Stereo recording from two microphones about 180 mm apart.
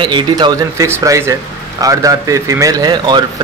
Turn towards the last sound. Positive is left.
turn(degrees=-20)  # may be behind; listen again after turning